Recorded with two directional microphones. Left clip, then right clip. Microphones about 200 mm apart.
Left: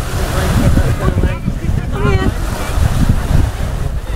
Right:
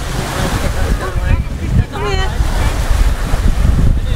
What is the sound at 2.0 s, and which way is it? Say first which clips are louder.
Boat: left 2 dB; 35° left (ahead or behind).